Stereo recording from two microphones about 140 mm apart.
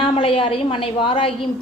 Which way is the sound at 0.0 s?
40° left (ahead or behind).